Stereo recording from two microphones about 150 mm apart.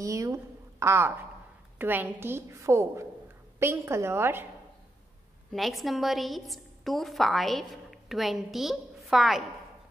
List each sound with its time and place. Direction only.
0.0 s a woman's voice: 20° right (ahead or behind)
5.5 s a woman's voice: centre (ahead or behind)